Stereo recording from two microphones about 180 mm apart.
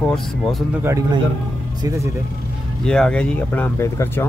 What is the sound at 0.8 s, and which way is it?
Speech, 20° right (ahead or behind).